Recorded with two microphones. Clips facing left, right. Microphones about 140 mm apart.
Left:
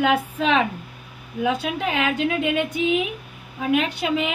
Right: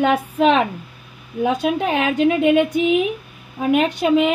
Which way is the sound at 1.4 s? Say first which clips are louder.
Right 4 dB; 40° right (ahead or behind).